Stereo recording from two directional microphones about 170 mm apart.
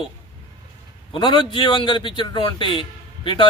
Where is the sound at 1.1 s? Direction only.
30° left (ahead or behind).